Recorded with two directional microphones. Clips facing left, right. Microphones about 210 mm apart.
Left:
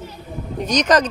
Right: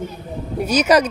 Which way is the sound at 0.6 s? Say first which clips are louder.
Right 2 dB; 10° right (ahead or behind).